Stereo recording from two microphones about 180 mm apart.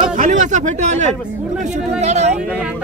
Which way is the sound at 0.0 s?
45° right (ahead or behind).